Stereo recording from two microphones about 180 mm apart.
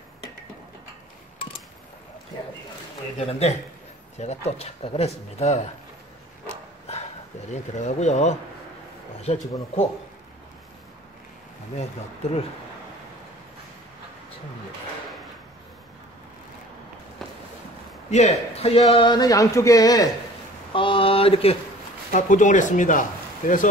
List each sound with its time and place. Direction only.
3.2 s speech: 35° left (ahead or behind)
7.5 s speech: 40° left (ahead or behind)
18.1 s speech: 35° left (ahead or behind); by 20.1 s 20° left (ahead or behind)
20.7 s a sound: 30° left (ahead or behind)
22.1 s a man's voice: 45° left (ahead or behind)